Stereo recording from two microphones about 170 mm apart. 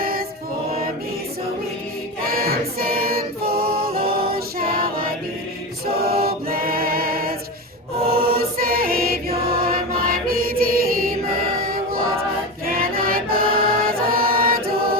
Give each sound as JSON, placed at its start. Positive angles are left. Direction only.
{"t": 0.0, "sound": "choir", "side_deg": -60}
{"t": 2.2, "sound": "choir", "side_deg": -60}
{"t": 8.4, "sound": "chant", "side_deg": -60}
{"t": 11.6, "sound": "music", "side_deg": -60}